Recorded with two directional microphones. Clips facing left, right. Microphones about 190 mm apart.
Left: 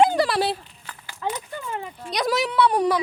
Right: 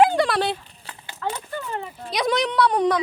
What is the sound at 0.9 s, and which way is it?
Horse, 25° right (ahead or behind).